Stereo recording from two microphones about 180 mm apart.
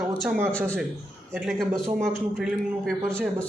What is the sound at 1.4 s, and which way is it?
A man's voice, centre (ahead or behind).